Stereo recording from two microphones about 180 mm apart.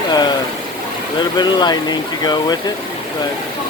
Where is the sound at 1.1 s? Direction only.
25° left (ahead or behind).